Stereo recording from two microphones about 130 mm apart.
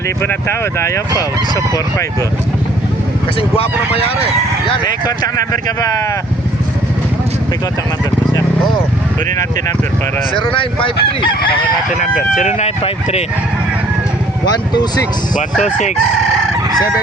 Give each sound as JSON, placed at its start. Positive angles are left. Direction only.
{"t": 0.2, "sound": "speech", "side_deg": 20}
{"t": 3.6, "sound": "speech", "side_deg": 45}
{"t": 4.6, "sound": "speech", "side_deg": 35}
{"t": 10.3, "sound": "speech", "side_deg": 40}
{"t": 12.4, "sound": "speech", "side_deg": 60}
{"t": 14.5, "sound": "speech", "side_deg": 35}